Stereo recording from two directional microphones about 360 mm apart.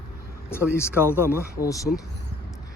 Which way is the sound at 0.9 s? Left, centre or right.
Centre.